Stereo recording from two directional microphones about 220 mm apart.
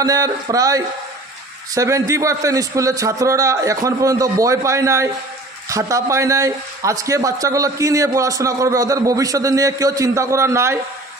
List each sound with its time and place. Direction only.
0.0 s a man's voice: 15° right (ahead or behind)